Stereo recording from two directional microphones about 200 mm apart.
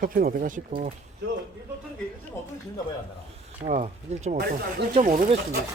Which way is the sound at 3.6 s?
35° right (ahead or behind).